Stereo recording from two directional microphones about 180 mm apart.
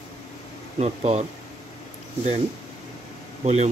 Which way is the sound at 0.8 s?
35° right (ahead or behind).